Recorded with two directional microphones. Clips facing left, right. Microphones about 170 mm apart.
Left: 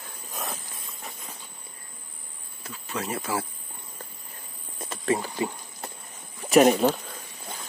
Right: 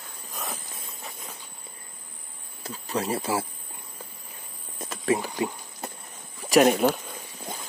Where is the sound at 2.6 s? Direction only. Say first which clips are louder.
Right 4 dB; 35° right (ahead or behind).